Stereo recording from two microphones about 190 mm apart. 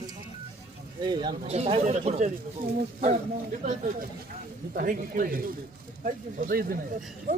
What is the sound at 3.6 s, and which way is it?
Speech, 40° right (ahead or behind).